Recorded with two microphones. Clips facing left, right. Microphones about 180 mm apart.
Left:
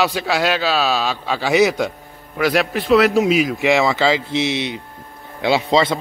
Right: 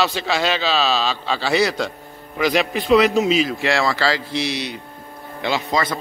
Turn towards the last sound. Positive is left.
turn(degrees=25)  # may be behind; listen again after turning